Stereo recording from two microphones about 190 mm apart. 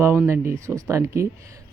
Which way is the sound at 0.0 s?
10° right (ahead or behind).